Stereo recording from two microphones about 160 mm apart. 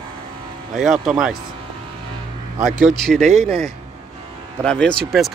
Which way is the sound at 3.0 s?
Centre (ahead or behind).